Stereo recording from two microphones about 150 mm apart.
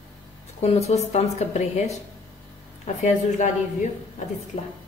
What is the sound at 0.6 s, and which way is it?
A woman's voice, 45° left (ahead or behind).